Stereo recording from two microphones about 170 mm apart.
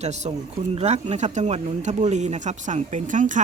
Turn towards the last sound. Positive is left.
turn(degrees=-50)  # may be behind; listen again after turning